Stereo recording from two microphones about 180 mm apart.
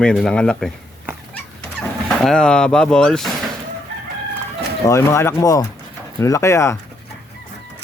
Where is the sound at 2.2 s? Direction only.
5° left (ahead or behind).